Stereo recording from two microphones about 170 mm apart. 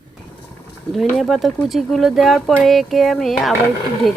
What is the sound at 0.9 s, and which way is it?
Speech, centre (ahead or behind).